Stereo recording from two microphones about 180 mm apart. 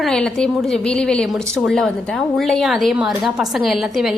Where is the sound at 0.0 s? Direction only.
5° left (ahead or behind).